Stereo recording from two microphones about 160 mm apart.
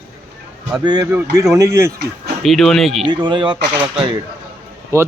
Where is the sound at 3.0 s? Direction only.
30° right (ahead or behind).